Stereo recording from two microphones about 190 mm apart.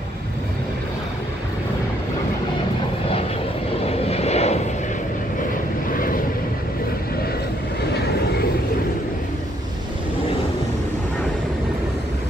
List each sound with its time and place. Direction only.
3.8 s vehicle: 30° left (ahead or behind)
5.9 s vehicle: 50° left (ahead or behind)
7.9 s vehicle: 60° left (ahead or behind)